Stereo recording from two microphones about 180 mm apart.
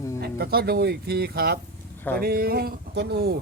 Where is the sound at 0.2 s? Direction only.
60° right (ahead or behind).